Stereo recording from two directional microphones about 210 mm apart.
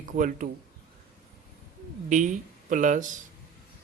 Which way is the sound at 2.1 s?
35° right (ahead or behind).